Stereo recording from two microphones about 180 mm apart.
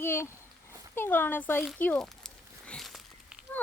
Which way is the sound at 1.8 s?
5° left (ahead or behind).